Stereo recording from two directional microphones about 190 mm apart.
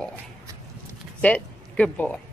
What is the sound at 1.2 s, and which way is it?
Speech, 5° left (ahead or behind).